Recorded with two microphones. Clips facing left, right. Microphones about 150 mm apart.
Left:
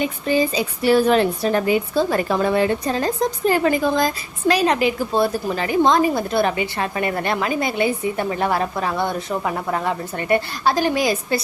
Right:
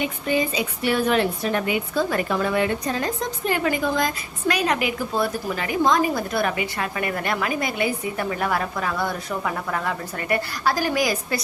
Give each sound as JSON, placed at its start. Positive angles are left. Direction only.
{"t": 0.0, "sound": "a woman's voice", "side_deg": 35}